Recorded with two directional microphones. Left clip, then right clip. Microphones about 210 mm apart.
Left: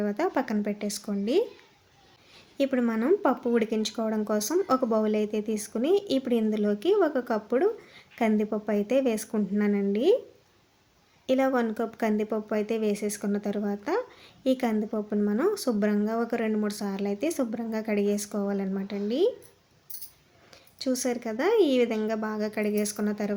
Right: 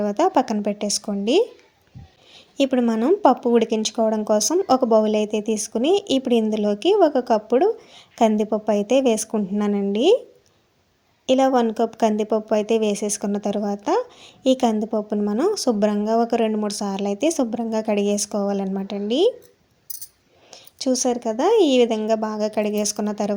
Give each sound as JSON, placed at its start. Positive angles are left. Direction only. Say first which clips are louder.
{"t": 0.0, "sound": "a woman's voice", "louder": "right 9 dB", "side_deg": -30}
{"t": 2.6, "sound": "a woman's voice", "louder": "right 7 dB", "side_deg": -30}
{"t": 11.3, "sound": "a woman's voice", "louder": "right 7 dB", "side_deg": -30}
{"t": 20.5, "sound": "a woman's voice", "louder": "right 7 dB", "side_deg": -25}